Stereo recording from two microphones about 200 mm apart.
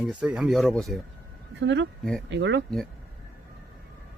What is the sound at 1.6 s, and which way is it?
Speech, 65° right (ahead or behind).